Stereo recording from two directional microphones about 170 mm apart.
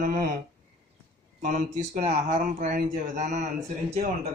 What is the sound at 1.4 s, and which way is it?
Speech, 50° right (ahead or behind).